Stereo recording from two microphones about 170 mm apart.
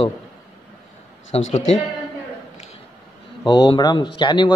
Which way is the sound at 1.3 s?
35° left (ahead or behind).